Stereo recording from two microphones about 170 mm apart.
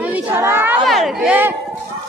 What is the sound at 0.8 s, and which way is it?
Speech, centre (ahead or behind).